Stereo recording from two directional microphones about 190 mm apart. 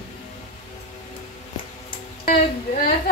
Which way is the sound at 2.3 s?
45° left (ahead or behind).